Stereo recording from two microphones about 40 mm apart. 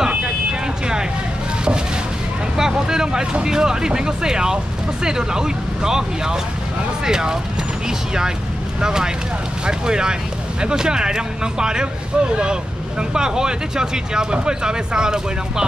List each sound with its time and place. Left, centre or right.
2.5 s vehicle: centre
3.4 s speech: centre
8.8 s speech: centre